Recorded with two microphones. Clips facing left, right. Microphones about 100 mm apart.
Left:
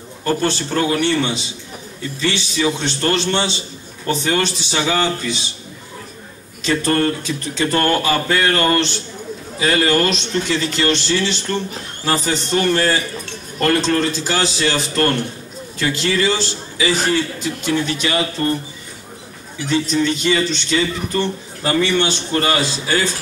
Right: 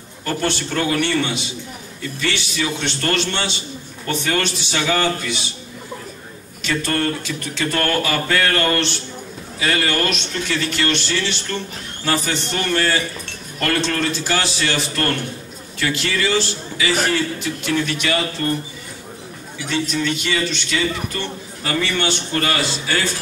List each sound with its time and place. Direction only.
0.2 s a man's voice: 25° left (ahead or behind)
6.6 s a man's voice: 30° left (ahead or behind)
19.7 s a man's voice: 30° left (ahead or behind)